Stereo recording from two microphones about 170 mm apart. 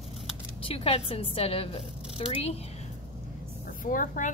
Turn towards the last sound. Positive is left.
turn(degrees=55)  # may be behind; listen again after turning